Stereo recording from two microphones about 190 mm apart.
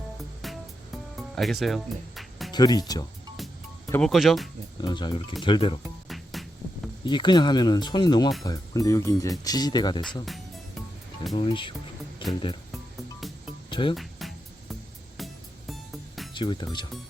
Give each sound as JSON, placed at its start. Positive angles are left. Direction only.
{"t": 0.4, "sound": "music", "side_deg": 0}
{"t": 2.5, "sound": "speech", "side_deg": 20}
{"t": 3.9, "sound": "speech", "side_deg": 0}
{"t": 4.8, "sound": "speech", "side_deg": 25}
{"t": 6.1, "sound": "hum", "side_deg": 0}
{"t": 7.0, "sound": "speech", "side_deg": 25}
{"t": 11.3, "sound": "speech", "side_deg": 25}
{"t": 12.2, "sound": "music", "side_deg": 25}
{"t": 12.7, "sound": "music", "side_deg": 0}
{"t": 13.7, "sound": "music", "side_deg": 25}
{"t": 13.9, "sound": "music", "side_deg": 0}
{"t": 16.3, "sound": "speech", "side_deg": 25}